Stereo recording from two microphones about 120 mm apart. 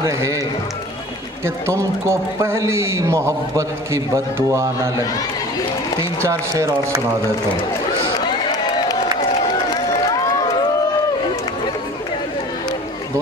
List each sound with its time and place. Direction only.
0.0 s a man's voice: 25° right (ahead or behind)
1.4 s a man's voice: 25° right (ahead or behind)
9.7 s run: 30° left (ahead or behind)